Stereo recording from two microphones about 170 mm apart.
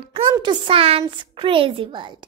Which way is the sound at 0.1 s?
30° right (ahead or behind).